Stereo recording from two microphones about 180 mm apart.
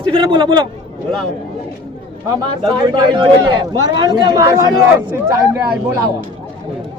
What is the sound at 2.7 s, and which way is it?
A man's voice, 25° right (ahead or behind).